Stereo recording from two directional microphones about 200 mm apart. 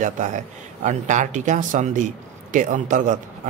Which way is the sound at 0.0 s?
40° right (ahead or behind).